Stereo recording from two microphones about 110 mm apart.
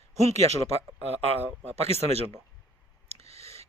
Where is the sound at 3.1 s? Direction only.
70° right (ahead or behind).